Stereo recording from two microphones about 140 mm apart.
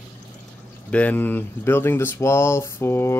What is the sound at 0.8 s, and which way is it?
Speech, 10° left (ahead or behind).